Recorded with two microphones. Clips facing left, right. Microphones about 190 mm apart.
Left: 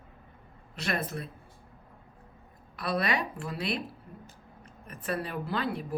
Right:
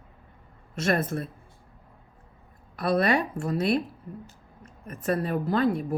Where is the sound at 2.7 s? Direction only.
45° right (ahead or behind).